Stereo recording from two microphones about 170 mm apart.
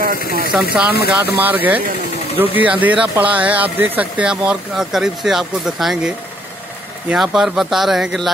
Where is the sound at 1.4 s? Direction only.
10° right (ahead or behind).